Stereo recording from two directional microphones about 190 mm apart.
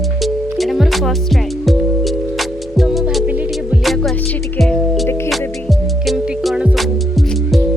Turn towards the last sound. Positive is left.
turn(degrees=0)  # may be behind; listen again after turning